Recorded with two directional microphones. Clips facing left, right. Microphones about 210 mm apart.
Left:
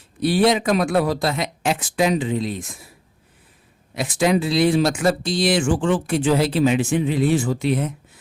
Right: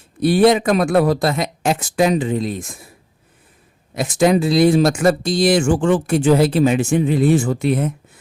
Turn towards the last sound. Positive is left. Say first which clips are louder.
# right 3 dB
turn(degrees=-50)  # may be behind; listen again after turning